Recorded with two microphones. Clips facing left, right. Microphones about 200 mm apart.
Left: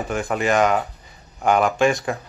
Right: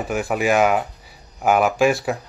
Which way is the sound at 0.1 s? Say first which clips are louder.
Right 1 dB; 5° right (ahead or behind).